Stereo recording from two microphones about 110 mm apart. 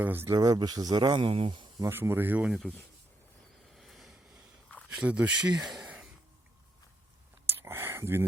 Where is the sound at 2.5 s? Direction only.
Centre (ahead or behind).